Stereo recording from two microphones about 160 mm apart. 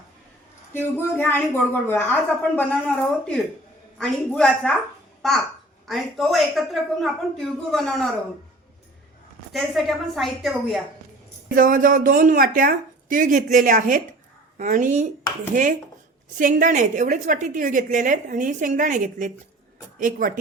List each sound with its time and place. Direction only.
0.7 s a woman's voice: 15° left (ahead or behind)
9.5 s a woman's voice: centre (ahead or behind)
11.4 s a woman's voice: 60° right (ahead or behind)
16.4 s a woman's voice: 55° right (ahead or behind)